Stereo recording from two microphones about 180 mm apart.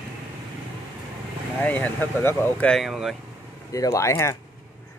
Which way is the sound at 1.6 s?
10° left (ahead or behind).